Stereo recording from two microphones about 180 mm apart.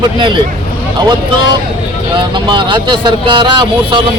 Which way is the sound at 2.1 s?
25° right (ahead or behind).